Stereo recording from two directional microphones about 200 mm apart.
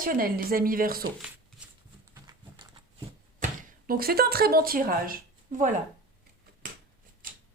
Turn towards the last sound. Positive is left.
turn(degrees=-40)  # may be behind; listen again after turning